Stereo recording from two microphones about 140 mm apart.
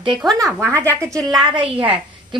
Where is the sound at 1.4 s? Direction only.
40° right (ahead or behind).